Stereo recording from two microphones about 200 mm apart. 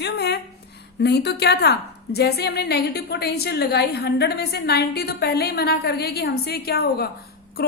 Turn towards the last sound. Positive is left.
turn(degrees=50)  # may be behind; listen again after turning